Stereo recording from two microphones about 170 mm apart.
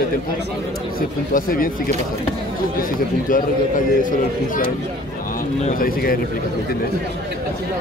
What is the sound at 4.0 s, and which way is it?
A man's voice, 50° left (ahead or behind).